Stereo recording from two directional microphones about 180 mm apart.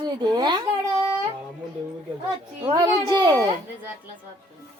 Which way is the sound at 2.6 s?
20° right (ahead or behind).